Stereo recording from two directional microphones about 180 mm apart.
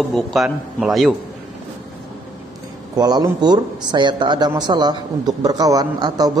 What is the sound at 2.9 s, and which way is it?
Speech, 25° right (ahead or behind).